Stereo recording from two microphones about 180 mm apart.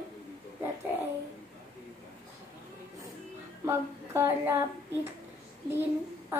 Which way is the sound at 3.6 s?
15° right (ahead or behind).